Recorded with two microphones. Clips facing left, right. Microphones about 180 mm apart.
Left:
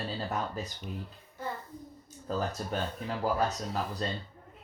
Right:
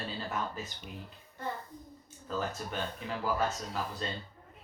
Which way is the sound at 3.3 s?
40° left (ahead or behind).